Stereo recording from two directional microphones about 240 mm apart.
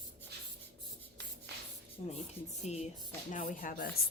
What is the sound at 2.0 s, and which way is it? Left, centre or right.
A woman's voice, left.